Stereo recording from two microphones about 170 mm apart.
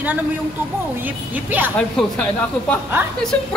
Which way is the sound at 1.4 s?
10° right (ahead or behind).